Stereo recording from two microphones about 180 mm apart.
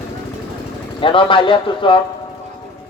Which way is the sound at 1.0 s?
30° left (ahead or behind).